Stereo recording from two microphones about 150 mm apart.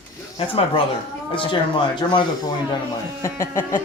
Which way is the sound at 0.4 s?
35° left (ahead or behind).